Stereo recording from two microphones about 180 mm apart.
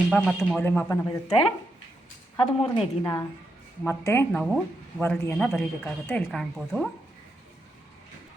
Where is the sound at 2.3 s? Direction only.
30° left (ahead or behind).